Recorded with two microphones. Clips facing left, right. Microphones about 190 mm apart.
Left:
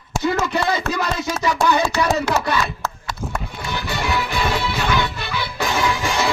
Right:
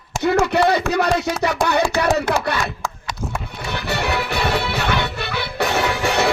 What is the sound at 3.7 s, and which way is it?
Music, 65° right (ahead or behind).